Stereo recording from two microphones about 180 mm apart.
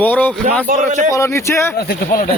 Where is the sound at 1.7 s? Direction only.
55° left (ahead or behind).